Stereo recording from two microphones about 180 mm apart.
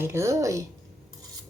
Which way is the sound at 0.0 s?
15° right (ahead or behind).